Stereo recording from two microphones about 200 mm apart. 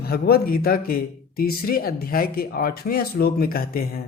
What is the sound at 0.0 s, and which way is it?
Speech, 50° left (ahead or behind).